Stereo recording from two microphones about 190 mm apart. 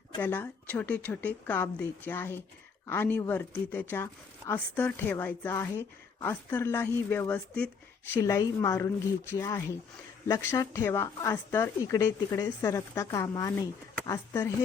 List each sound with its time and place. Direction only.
0.2 s speech: 10° left (ahead or behind)